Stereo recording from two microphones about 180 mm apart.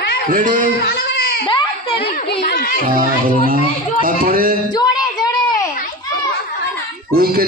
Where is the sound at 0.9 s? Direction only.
65° left (ahead or behind).